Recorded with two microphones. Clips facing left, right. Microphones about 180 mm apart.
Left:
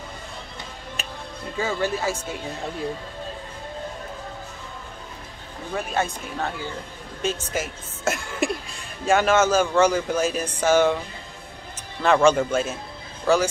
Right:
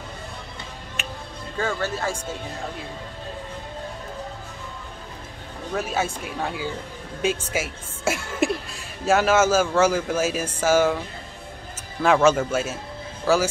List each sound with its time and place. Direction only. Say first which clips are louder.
1.0 s music: right 3 dB; 35° left (ahead or behind)
1.6 s speech: left 1 dB; 10° left (ahead or behind)
5.8 s speech: even; 5° right (ahead or behind)
12.0 s speech: even; 5° right (ahead or behind)